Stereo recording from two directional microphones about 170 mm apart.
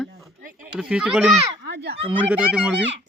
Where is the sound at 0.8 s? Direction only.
5° right (ahead or behind).